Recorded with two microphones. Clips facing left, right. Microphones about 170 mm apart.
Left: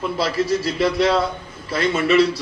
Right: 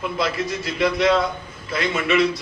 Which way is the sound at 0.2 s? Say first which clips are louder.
Left 5 dB; 35° left (ahead or behind).